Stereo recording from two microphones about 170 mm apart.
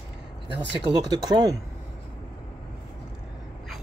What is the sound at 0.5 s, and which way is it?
Speech, 90° right.